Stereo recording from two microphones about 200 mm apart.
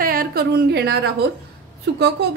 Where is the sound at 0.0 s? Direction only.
45° right (ahead or behind).